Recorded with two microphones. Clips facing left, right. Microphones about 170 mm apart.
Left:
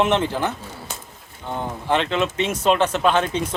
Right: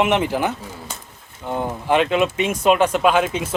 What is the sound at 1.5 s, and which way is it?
Speech, 10° right (ahead or behind).